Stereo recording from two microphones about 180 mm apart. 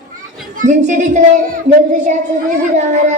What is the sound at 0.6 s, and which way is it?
Speech, 40° right (ahead or behind).